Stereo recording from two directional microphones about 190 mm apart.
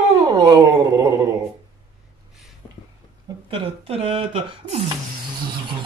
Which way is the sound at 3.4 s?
30° right (ahead or behind).